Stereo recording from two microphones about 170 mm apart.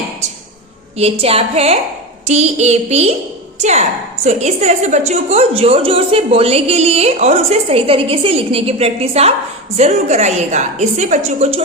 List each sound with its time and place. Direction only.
1.2 s a woman's voice: 35° right (ahead or behind)